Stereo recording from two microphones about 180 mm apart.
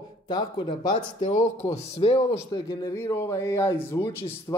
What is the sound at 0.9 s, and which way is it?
Speech, 40° left (ahead or behind).